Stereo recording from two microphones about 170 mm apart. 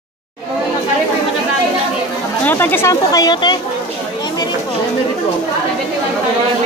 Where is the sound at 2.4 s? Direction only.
10° left (ahead or behind).